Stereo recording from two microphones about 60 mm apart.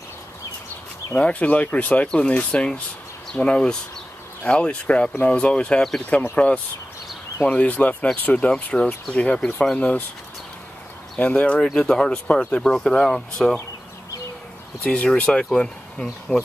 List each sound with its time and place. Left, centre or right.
1.1 s speech: left
11.1 s speech: left
11.6 s speech: centre
12.6 s speech: centre
14.8 s speech: centre